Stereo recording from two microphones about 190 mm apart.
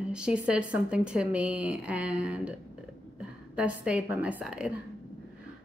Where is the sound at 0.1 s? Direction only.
5° right (ahead or behind).